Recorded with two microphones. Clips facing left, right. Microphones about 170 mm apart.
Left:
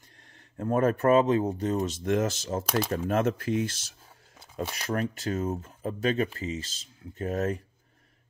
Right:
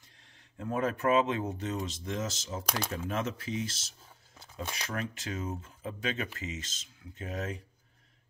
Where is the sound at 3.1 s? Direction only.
50° left (ahead or behind).